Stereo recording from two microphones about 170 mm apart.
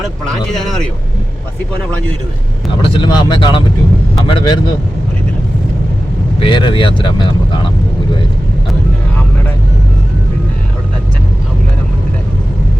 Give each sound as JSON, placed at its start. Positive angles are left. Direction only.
{"t": 0.5, "sound": "speech", "side_deg": 0}
{"t": 2.8, "sound": "speech", "side_deg": 30}
{"t": 6.4, "sound": "speech", "side_deg": 30}